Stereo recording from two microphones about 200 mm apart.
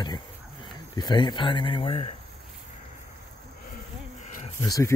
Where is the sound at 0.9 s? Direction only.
20° left (ahead or behind).